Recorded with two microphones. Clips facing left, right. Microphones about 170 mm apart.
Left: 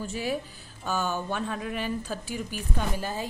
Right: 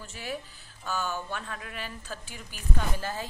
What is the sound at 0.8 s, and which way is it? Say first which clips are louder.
A woman's voice: left 4 dB; 15° left (ahead or behind).